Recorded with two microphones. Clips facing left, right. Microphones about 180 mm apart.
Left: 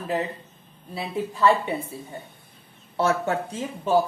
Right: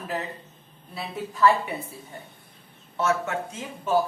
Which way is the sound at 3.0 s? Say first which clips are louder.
Left 3 dB; 35° left (ahead or behind).